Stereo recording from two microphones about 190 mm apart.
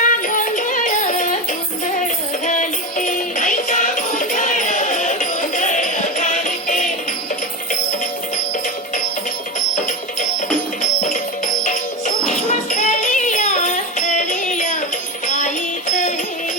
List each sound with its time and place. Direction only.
0.0 s music: 45° left (ahead or behind)
2.5 s music: 40° left (ahead or behind)
11.0 s music: 40° left (ahead or behind)